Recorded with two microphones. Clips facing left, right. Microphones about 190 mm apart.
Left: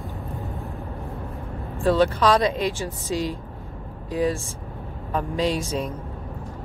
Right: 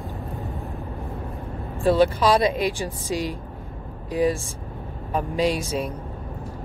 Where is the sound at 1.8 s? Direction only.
15° right (ahead or behind).